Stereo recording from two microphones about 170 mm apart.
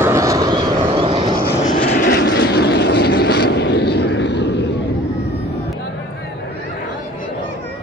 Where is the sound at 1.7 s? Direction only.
60° left (ahead or behind); by 4.6 s 85° left.